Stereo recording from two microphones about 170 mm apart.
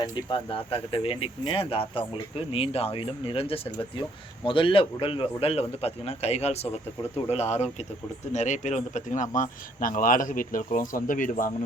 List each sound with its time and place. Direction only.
0.0 s speech: 30° left (ahead or behind); by 11.5 s 50° left (ahead or behind)